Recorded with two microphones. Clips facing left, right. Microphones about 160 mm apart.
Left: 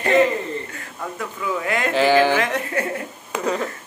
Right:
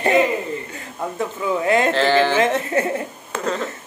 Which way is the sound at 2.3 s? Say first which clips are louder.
Right 3 dB; 25° right (ahead or behind).